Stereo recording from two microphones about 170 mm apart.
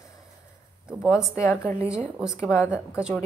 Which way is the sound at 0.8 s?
5° right (ahead or behind).